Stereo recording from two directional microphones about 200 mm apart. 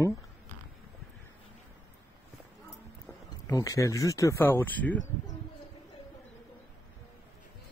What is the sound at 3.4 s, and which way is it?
Speech, 15° left (ahead or behind).